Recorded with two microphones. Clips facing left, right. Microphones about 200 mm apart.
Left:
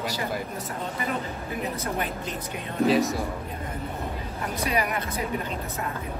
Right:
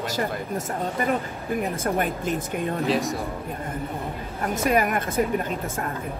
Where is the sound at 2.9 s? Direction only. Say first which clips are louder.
Left 3 dB; centre (ahead or behind).